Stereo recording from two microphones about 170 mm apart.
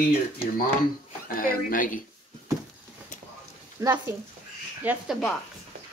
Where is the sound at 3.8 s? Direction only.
20° right (ahead or behind).